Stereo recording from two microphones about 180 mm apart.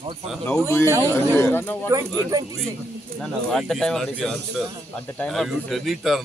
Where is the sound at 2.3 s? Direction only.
20° right (ahead or behind).